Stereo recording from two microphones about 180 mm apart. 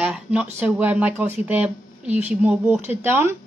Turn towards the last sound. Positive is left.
turn(degrees=-15)  # may be behind; listen again after turning